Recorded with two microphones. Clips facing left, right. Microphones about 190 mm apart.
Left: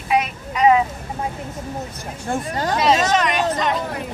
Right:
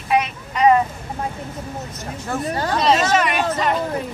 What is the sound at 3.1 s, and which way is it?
Speech, 5° right (ahead or behind).